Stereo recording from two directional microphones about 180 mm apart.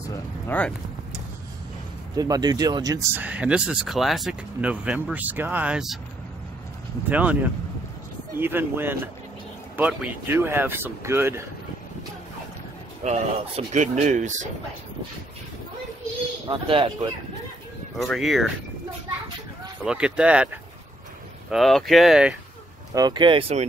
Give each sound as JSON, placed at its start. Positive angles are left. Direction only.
{"t": 0.1, "sound": "speech", "side_deg": 10}
{"t": 2.1, "sound": "speech", "side_deg": -20}
{"t": 7.1, "sound": "speech", "side_deg": -10}
{"t": 8.4, "sound": "speech", "side_deg": -10}
{"t": 13.0, "sound": "speech", "side_deg": -40}
{"t": 16.4, "sound": "speech", "side_deg": -30}
{"t": 17.9, "sound": "speech", "side_deg": 0}
{"t": 19.8, "sound": "speech", "side_deg": -5}
{"t": 21.5, "sound": "speech", "side_deg": 0}
{"t": 22.9, "sound": "speech", "side_deg": -25}